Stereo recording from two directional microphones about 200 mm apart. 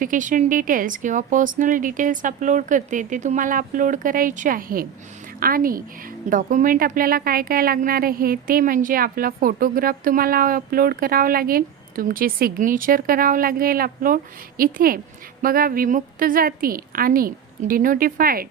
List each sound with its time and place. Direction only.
0.0 s speech: 40° right (ahead or behind)